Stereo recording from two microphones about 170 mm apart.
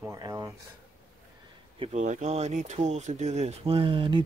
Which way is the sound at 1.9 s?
45° right (ahead or behind).